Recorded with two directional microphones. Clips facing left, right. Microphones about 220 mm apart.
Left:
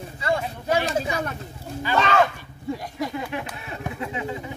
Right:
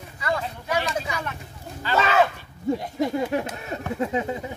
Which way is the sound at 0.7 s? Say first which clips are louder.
Left 4 dB; 30° left (ahead or behind).